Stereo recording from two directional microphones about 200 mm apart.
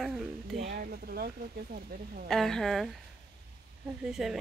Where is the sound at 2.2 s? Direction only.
Centre (ahead or behind).